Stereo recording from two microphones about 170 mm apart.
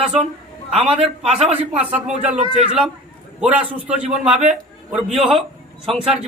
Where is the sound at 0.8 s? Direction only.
35° right (ahead or behind).